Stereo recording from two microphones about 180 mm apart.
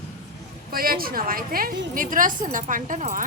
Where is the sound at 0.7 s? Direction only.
55° right (ahead or behind).